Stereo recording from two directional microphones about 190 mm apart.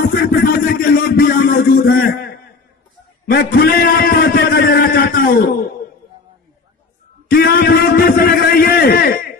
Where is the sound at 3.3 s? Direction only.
55° left (ahead or behind).